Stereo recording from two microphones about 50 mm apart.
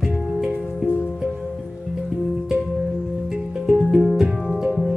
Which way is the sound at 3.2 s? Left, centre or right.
Centre.